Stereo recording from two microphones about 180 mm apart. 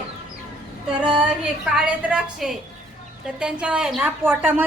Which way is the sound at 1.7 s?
5° right (ahead or behind).